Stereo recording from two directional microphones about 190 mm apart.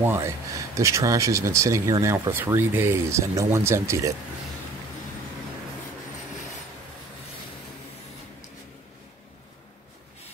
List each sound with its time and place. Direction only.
0.0 s speech: 15° right (ahead or behind)